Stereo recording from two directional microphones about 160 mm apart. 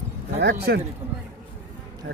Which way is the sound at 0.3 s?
90° right.